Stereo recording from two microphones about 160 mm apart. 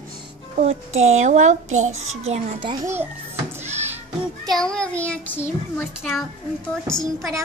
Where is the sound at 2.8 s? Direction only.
15° right (ahead or behind).